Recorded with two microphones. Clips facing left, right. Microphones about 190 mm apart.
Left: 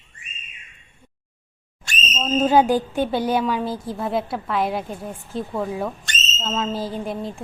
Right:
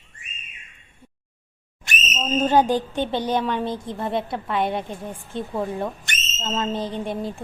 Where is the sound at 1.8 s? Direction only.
15° right (ahead or behind).